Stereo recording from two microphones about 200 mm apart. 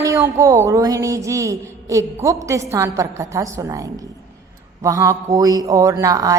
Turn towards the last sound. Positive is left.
turn(degrees=-15)  # may be behind; listen again after turning